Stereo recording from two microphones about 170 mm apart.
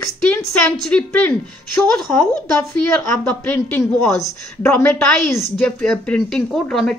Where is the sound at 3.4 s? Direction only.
10° left (ahead or behind).